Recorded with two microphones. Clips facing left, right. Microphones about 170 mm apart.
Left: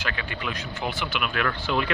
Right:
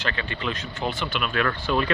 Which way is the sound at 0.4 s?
15° left (ahead or behind).